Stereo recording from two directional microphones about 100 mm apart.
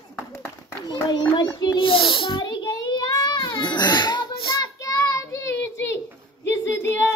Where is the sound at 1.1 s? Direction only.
50° left (ahead or behind).